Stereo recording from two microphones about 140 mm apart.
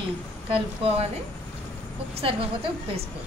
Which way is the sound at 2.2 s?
40° right (ahead or behind).